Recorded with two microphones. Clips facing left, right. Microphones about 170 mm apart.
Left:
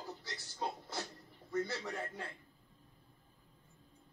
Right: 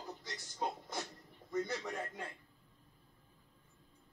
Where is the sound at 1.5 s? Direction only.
15° right (ahead or behind).